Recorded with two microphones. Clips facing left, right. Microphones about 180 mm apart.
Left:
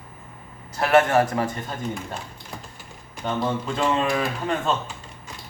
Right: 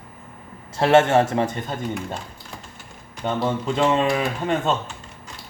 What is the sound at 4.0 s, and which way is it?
Speech, 20° right (ahead or behind).